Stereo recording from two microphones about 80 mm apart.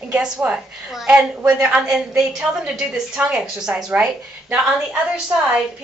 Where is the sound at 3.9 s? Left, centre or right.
Centre.